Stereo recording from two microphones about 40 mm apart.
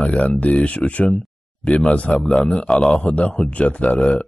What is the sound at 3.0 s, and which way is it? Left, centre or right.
Speech, left.